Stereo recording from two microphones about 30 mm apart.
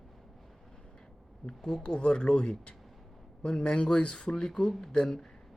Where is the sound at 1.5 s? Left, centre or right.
Centre.